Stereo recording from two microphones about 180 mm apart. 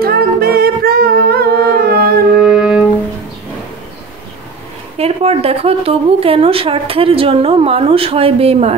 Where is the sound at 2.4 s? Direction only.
5° right (ahead or behind).